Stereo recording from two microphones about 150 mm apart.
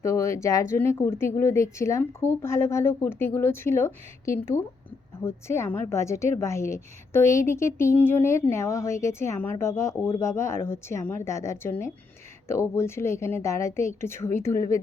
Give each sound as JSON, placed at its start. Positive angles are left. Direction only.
{"t": 0.0, "sound": "a woman's voice", "side_deg": 20}